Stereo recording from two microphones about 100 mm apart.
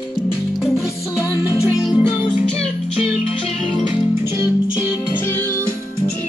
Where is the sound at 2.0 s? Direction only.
15° right (ahead or behind).